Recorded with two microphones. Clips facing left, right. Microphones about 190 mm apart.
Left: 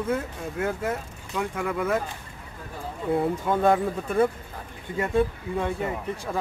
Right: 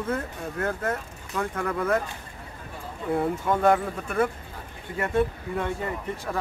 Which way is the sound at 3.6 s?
20° left (ahead or behind).